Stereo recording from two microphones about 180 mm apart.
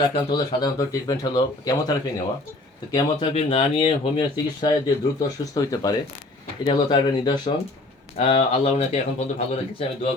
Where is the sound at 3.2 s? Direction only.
35° left (ahead or behind).